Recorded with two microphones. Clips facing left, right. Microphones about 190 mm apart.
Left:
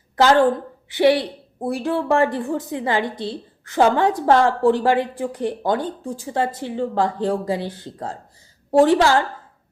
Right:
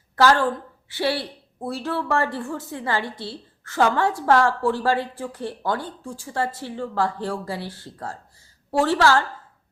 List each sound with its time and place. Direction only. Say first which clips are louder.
0.2 s a woman's voice: left 4 dB; 20° left (ahead or behind)